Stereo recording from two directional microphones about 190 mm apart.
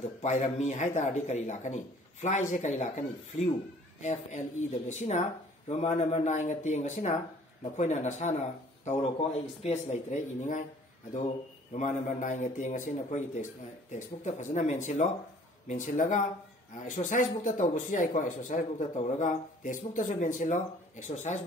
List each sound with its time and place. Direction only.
0.2 s a man's voice: 40° left (ahead or behind)
11.7 s speech: 40° left (ahead or behind)